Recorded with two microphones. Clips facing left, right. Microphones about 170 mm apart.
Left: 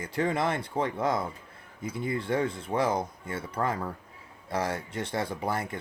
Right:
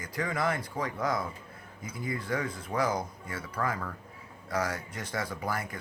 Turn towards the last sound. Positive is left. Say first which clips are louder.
# left 3 dB
turn(degrees=25)  # may be behind; listen again after turning